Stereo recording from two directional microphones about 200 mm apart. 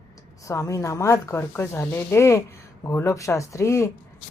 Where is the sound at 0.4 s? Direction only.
15° left (ahead or behind).